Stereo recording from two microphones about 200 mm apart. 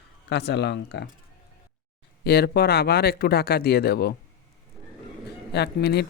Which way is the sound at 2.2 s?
50° left (ahead or behind).